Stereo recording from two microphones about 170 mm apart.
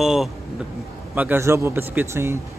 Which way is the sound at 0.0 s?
5° right (ahead or behind).